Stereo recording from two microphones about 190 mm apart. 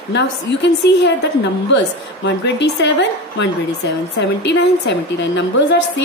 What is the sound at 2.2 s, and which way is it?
A woman's voice, 65° left (ahead or behind).